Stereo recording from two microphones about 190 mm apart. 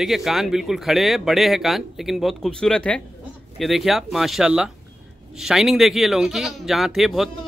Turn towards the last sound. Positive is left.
turn(degrees=0)  # may be behind; listen again after turning